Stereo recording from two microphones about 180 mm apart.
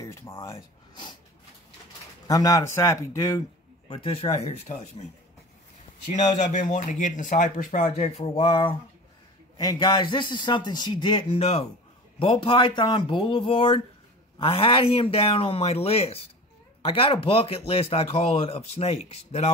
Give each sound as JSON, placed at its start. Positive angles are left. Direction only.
{"t": 0.0, "sound": "speech", "side_deg": 15}
{"t": 2.2, "sound": "speech", "side_deg": 20}
{"t": 3.9, "sound": "speech", "side_deg": 30}
{"t": 6.3, "sound": "speech", "side_deg": 45}
{"t": 8.2, "sound": "a man's voice", "side_deg": 30}